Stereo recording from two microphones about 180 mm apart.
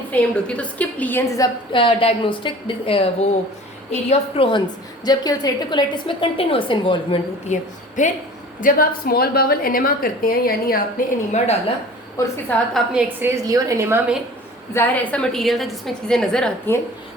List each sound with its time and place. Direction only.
0.1 s a woman's voice: 10° left (ahead or behind)
1.7 s a woman's voice: 30° left (ahead or behind)
4.1 s a woman's voice: 30° left (ahead or behind)
8.6 s a woman's voice: 55° left (ahead or behind)
12.2 s a woman's voice: 15° left (ahead or behind)
12.7 s a woman's voice: 10° right (ahead or behind)
14.7 s a woman's voice: 10° left (ahead or behind)